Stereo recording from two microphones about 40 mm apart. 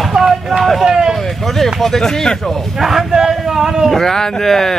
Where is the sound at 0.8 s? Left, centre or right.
Centre.